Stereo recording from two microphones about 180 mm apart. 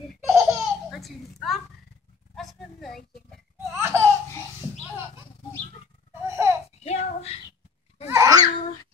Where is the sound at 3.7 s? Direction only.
15° right (ahead or behind).